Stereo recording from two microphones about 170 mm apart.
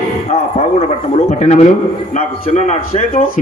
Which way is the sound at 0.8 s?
40° left (ahead or behind).